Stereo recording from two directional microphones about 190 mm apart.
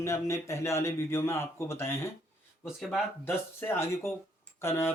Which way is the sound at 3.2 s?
10° left (ahead or behind).